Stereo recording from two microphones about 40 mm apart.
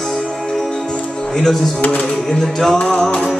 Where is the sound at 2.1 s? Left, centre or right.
Centre.